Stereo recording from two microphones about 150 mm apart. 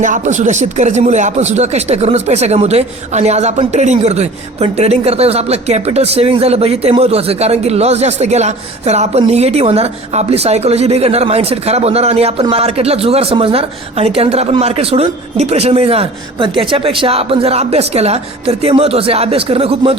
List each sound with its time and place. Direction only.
0.0 s a man's voice: 55° right (ahead or behind); by 20.0 s 40° right (ahead or behind)